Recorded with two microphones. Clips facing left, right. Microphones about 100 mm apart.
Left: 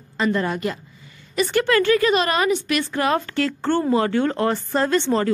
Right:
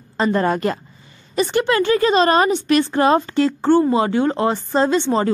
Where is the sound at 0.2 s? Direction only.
40° right (ahead or behind).